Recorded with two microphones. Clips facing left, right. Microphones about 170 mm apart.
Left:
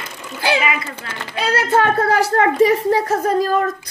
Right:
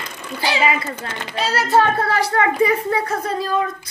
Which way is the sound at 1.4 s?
50° left (ahead or behind).